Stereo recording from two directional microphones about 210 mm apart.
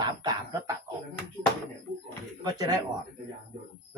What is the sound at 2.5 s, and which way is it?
Speech, 15° right (ahead or behind).